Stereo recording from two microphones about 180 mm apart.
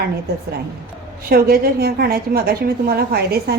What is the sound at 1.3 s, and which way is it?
A woman's voice, 55° right (ahead or behind).